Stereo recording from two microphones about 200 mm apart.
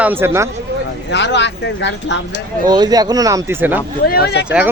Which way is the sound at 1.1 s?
60° left (ahead or behind).